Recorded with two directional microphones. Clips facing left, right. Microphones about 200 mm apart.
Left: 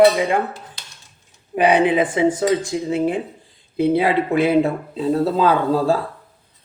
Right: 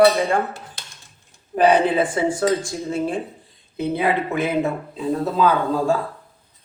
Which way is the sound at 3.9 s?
30° left (ahead or behind).